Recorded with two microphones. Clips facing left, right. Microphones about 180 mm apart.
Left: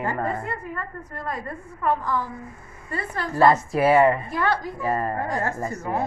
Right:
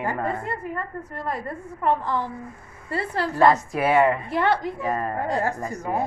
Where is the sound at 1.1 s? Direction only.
25° right (ahead or behind).